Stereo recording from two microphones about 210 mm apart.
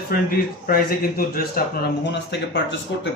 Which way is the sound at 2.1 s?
55° left (ahead or behind).